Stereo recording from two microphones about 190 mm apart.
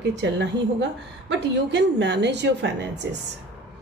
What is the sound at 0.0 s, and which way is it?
A woman's voice, 65° right (ahead or behind).